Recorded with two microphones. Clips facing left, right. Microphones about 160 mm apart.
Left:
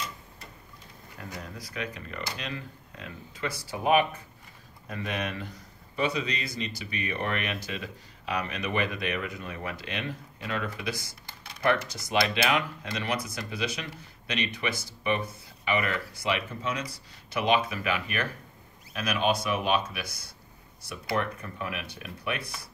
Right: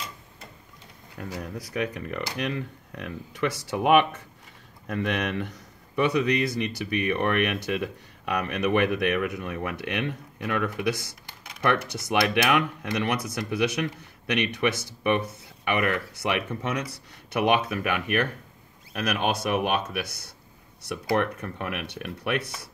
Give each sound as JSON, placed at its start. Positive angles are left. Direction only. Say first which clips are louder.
{"t": 1.4, "sound": "speech", "louder": "right 8 dB", "side_deg": -60}